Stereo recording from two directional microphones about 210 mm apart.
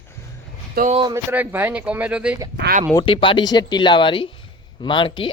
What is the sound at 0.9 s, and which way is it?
Speech, 20° right (ahead or behind).